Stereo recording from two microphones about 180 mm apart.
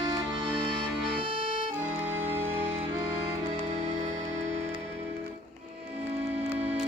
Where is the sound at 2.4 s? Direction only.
15° right (ahead or behind).